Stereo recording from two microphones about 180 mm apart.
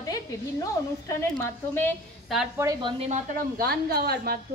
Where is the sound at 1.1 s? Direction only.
15° left (ahead or behind).